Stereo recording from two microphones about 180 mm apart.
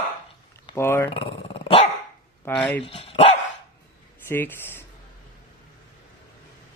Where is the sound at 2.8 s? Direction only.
30° left (ahead or behind).